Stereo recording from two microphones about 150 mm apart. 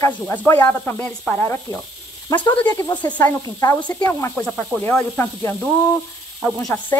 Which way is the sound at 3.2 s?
25° left (ahead or behind).